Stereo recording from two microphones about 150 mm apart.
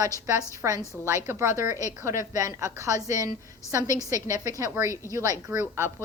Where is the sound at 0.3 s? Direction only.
20° right (ahead or behind).